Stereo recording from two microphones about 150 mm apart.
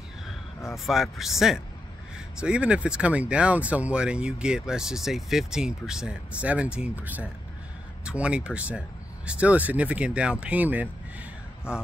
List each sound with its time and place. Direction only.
0.8 s speech: centre (ahead or behind)
11.7 s speech: 15° left (ahead or behind)